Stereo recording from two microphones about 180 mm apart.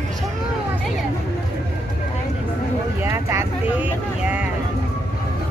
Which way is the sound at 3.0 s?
15° right (ahead or behind).